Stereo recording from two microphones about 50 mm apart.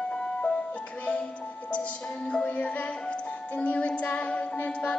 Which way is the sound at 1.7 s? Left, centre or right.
Left.